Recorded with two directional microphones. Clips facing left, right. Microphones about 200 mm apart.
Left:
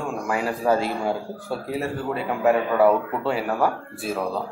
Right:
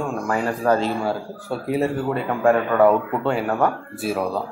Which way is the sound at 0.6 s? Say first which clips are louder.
Right 2 dB; 10° left (ahead or behind).